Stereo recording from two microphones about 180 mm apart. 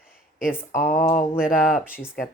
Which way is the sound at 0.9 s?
45° left (ahead or behind).